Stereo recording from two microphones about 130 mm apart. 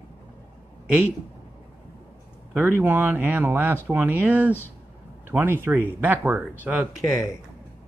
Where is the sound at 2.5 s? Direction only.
15° right (ahead or behind).